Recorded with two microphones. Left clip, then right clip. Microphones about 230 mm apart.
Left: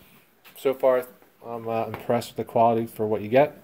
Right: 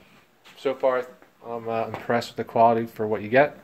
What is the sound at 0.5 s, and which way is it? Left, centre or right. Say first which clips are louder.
Speech: left 2 dB; left.